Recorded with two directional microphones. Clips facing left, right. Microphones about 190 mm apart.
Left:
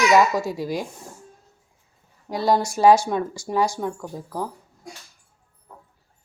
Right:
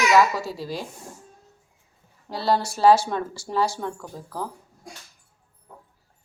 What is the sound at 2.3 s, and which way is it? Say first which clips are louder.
Speech: left 3 dB; 15° left (ahead or behind).